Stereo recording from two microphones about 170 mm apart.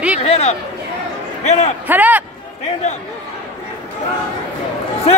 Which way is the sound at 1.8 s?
10° right (ahead or behind).